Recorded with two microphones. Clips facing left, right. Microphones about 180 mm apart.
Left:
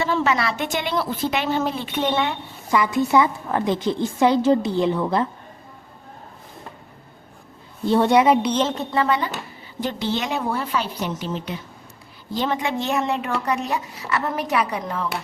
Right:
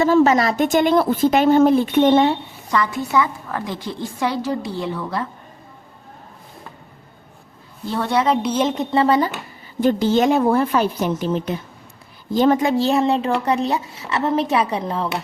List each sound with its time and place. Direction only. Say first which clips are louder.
0.0 s speech: right 7 dB; 45° right (ahead or behind)
2.6 s a woman's voice: left 1 dB; 10° left (ahead or behind)
3.1 s a woman's voice: left 2 dB; 25° left (ahead or behind)
7.9 s a woman's voice: left 3 dB; 20° left (ahead or behind)
8.4 s speech: right 1 dB; 5° right (ahead or behind)
8.6 s a woman's voice: right 4 dB; 15° right (ahead or behind)
9.0 s speech: right 5 dB; 35° right (ahead or behind)